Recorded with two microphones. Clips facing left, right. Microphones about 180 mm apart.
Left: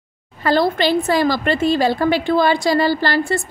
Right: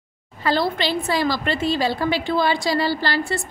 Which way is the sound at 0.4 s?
50° left (ahead or behind).